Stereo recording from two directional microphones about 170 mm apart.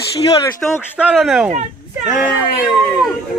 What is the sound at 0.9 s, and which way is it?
Speech, 5° right (ahead or behind).